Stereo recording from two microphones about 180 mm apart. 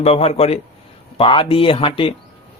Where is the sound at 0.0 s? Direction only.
35° left (ahead or behind).